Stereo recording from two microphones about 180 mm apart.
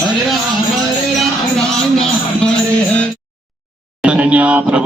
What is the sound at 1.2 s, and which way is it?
Music, 5° left (ahead or behind).